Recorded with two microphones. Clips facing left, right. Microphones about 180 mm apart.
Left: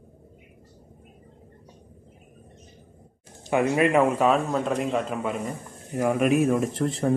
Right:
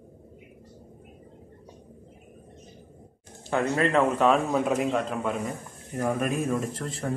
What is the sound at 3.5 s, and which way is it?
Speech, 15° left (ahead or behind).